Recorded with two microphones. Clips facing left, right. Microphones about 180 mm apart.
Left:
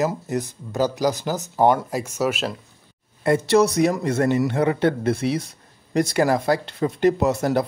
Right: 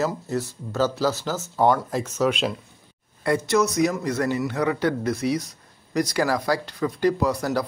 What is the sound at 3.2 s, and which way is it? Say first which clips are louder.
Speech: left 4 dB; 30° left (ahead or behind).